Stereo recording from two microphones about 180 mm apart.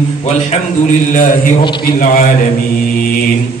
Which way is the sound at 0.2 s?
40° left (ahead or behind).